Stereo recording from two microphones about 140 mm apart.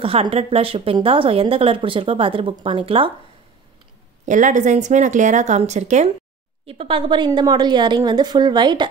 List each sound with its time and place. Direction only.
0.0 s a woman's voice: 40° right (ahead or behind)
4.3 s a woman's voice: 65° right (ahead or behind)
6.6 s a woman's voice: 40° right (ahead or behind)